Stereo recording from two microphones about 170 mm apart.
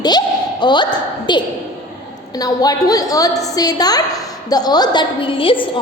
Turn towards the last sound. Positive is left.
turn(degrees=30)  # may be behind; listen again after turning